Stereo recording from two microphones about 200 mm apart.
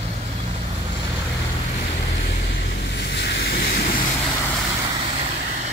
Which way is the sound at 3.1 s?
55° left (ahead or behind).